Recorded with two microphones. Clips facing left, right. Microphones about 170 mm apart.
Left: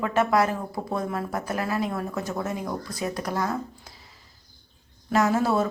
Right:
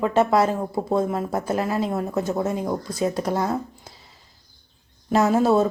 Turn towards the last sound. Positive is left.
turn(degrees=-25)  # may be behind; listen again after turning